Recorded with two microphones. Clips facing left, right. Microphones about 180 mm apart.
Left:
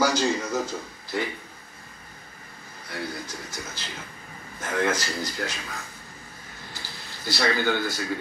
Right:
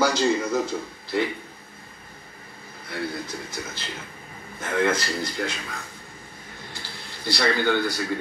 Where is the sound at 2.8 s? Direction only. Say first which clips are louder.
Right 3 dB; 25° right (ahead or behind).